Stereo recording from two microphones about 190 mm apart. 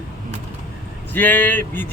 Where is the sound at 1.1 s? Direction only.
10° left (ahead or behind).